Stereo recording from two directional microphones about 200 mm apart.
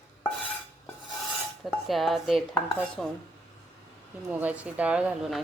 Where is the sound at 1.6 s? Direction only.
Centre (ahead or behind).